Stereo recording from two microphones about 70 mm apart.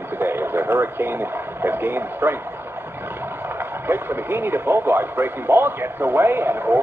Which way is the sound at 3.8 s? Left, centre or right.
Right.